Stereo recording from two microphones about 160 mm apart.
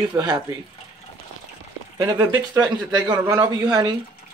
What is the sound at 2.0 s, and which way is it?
Speech, 20° right (ahead or behind).